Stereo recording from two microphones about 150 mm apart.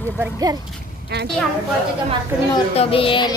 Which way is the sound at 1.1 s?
90° right.